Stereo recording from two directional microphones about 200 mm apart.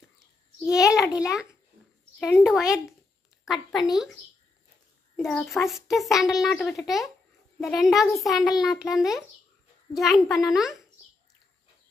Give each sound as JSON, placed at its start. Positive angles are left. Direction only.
{"t": 0.6, "sound": "a child's voice", "side_deg": 15}
{"t": 2.1, "sound": "a child's voice", "side_deg": 0}
{"t": 5.2, "sound": "a child's voice", "side_deg": 0}